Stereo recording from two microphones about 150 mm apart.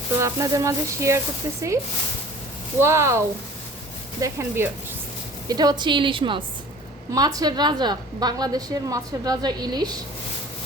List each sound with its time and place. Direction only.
0.2 s a woman's voice: 20° right (ahead or behind)
2.8 s a woman's voice: 20° right (ahead or behind)
5.5 s a woman's voice: 25° right (ahead or behind)